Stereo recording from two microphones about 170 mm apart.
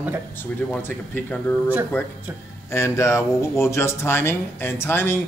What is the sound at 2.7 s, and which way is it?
Speech, 15° left (ahead or behind).